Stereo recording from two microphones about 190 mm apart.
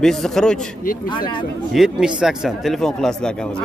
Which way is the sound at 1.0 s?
25° left (ahead or behind).